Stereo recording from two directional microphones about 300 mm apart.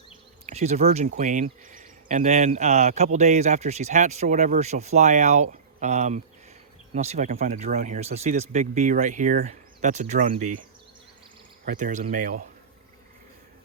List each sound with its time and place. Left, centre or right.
0.4 s speech: right
11.6 s speech: right